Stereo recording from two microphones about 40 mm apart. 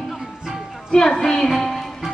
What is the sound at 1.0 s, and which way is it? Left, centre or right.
Speech, centre.